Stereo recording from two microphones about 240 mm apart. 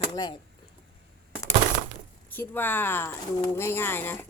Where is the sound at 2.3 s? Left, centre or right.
Centre.